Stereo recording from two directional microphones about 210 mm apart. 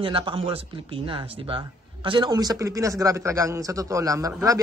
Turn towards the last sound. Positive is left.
turn(degrees=-15)  # may be behind; listen again after turning